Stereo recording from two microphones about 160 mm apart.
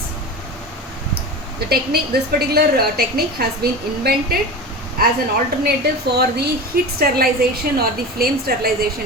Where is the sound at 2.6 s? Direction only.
80° right.